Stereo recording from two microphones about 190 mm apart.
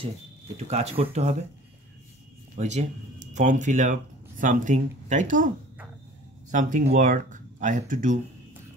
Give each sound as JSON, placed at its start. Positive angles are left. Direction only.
{"t": 0.7, "sound": "speech", "side_deg": -35}
{"t": 2.5, "sound": "speech", "side_deg": -35}
{"t": 6.5, "sound": "speech", "side_deg": -40}